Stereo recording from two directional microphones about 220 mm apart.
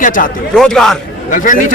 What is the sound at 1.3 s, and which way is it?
Speech, 35° left (ahead or behind).